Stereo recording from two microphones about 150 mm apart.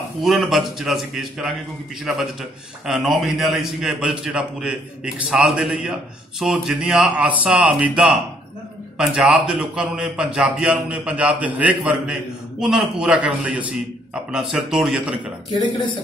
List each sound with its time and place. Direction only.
0.2 s a man's voice: centre (ahead or behind)
2.9 s a man's voice: centre (ahead or behind)